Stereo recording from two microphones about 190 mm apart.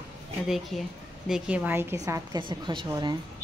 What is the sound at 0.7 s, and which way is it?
A woman's voice, centre (ahead or behind).